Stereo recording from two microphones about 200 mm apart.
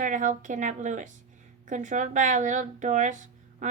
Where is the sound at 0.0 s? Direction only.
40° right (ahead or behind).